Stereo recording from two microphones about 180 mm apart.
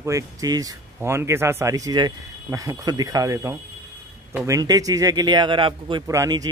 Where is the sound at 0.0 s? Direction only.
20° right (ahead or behind).